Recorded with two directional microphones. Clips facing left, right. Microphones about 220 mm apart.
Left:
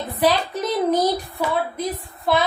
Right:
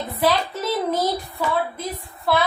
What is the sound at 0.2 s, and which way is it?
A child's voice, 15° left (ahead or behind).